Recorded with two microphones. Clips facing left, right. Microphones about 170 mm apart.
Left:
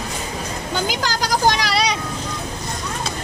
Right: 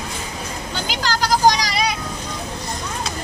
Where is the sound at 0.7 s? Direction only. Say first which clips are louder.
Left 2 dB; 45° left (ahead or behind); by 2.0 s 75° left (ahead or behind).